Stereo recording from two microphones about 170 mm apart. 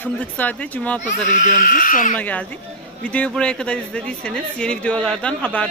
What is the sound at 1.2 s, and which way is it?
Speech, 50° left (ahead or behind).